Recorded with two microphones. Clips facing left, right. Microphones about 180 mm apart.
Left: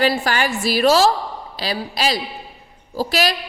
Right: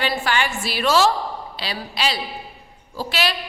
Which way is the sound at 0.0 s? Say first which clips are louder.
Left 4 dB; 40° left (ahead or behind).